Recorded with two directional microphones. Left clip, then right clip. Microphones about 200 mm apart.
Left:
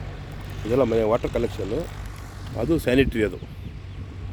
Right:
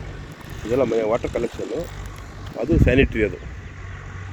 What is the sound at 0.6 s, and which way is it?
Speech, 50° right (ahead or behind).